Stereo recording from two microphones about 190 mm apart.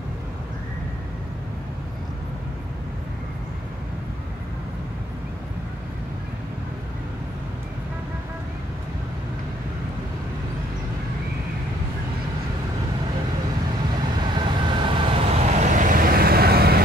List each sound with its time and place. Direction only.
14.2 s vehicle: 25° right (ahead or behind); by 16.8 s 55° right (ahead or behind)